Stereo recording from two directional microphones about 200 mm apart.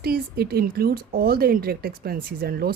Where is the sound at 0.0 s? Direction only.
50° right (ahead or behind).